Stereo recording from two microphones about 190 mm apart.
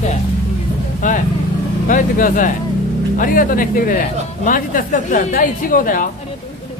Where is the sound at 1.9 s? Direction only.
45° left (ahead or behind).